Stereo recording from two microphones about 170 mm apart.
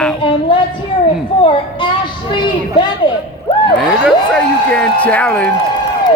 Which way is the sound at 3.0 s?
30° left (ahead or behind).